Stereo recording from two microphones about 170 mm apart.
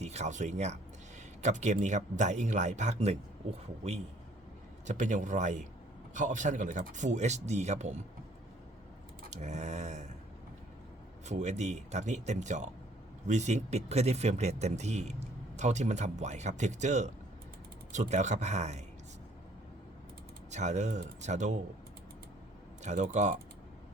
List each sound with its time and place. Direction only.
0.0 s speech: 40° right (ahead or behind)
4.9 s speech: 45° right (ahead or behind)
9.3 s speech: 45° right (ahead or behind)
11.3 s speech: 45° right (ahead or behind)
20.5 s speech: 45° right (ahead or behind)
22.8 s speech: 45° right (ahead or behind)